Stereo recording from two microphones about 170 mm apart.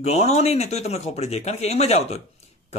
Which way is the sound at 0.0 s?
40° left (ahead or behind).